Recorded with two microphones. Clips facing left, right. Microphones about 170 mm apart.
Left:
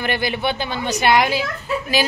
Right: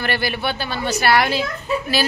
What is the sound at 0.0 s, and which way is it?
Speech, 15° left (ahead or behind).